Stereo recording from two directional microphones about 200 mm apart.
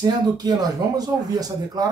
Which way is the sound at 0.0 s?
20° right (ahead or behind).